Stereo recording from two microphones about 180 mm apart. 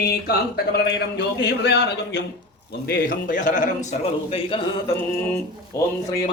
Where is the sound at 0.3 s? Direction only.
60° left (ahead or behind).